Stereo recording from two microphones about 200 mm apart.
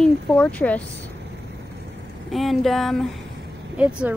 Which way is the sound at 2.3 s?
Centre (ahead or behind).